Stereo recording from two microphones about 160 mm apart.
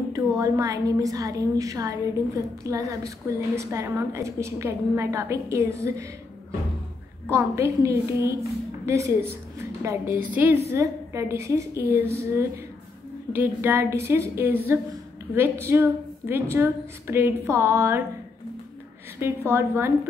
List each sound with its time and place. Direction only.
0.1 s a woman's voice: 20° right (ahead or behind)
7.2 s a woman's voice: 15° right (ahead or behind)
19.1 s a woman's voice: 15° right (ahead or behind)